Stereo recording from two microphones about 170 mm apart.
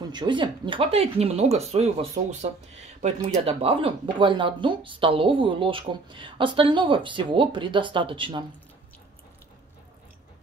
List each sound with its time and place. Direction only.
0.1 s speech: 25° right (ahead or behind)